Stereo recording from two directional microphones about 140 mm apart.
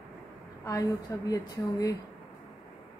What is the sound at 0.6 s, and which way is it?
A woman's voice, 25° left (ahead or behind).